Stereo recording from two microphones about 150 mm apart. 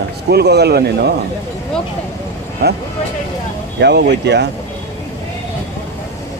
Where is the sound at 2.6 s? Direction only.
90° right.